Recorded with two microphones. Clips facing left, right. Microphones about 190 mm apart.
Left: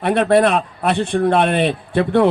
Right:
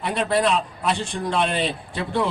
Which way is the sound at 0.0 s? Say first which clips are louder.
Left 8 dB; 60° left (ahead or behind).